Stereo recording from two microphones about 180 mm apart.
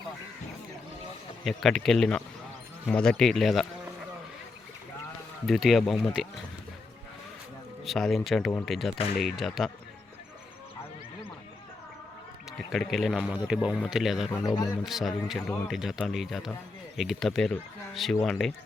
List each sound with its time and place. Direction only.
1.5 s speech: centre (ahead or behind)
5.5 s speech: centre (ahead or behind)
7.9 s speech: centre (ahead or behind)
12.5 s speech: centre (ahead or behind)
14.3 s speech: 20° left (ahead or behind)
14.8 s speech: centre (ahead or behind)